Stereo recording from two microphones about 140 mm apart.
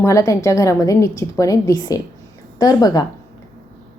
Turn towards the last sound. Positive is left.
turn(degrees=25)  # may be behind; listen again after turning